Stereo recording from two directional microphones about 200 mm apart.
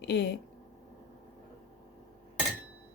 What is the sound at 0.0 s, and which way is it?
Speech, 55° left (ahead or behind).